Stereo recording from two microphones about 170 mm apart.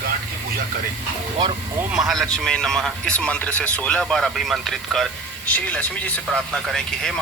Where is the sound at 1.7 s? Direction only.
5° right (ahead or behind).